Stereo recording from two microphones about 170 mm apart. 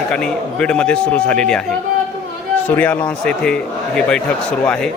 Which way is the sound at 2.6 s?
10° left (ahead or behind).